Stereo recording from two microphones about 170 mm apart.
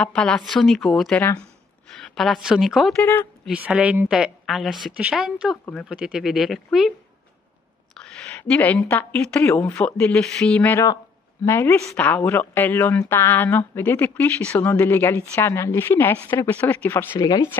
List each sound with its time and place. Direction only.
0.0 s a woman's voice: 5° left (ahead or behind)
3.0 s speech: 15° left (ahead or behind)
3.4 s a woman's voice: 5° right (ahead or behind)
8.0 s speech: 5° left (ahead or behind)